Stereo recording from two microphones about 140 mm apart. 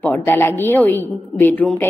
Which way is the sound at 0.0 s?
15° left (ahead or behind).